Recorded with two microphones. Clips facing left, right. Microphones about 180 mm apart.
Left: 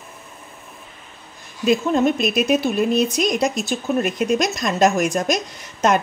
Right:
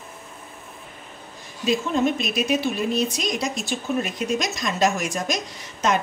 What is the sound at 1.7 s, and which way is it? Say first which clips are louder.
Speech: left 4 dB; 55° left (ahead or behind).